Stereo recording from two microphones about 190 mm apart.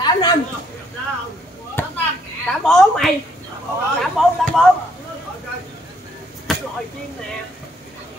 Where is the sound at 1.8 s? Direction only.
10° left (ahead or behind).